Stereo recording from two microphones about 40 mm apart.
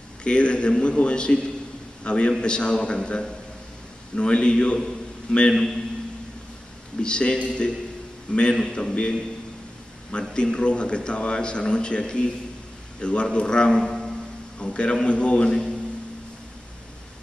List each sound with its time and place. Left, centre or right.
0.2 s speech: left
5.5 s a man's voice: centre
7.0 s speech: left
10.3 s speech: left
14.6 s speech: left